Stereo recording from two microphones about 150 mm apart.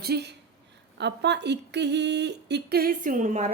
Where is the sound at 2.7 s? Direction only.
85° right; by 3.5 s 55° right (ahead or behind).